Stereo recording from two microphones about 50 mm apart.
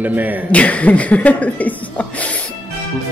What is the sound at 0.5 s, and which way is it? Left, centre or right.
Speech, left.